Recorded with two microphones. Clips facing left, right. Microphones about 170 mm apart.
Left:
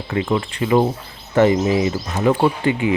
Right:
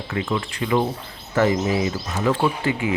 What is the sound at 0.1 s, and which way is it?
Speech, 30° left (ahead or behind).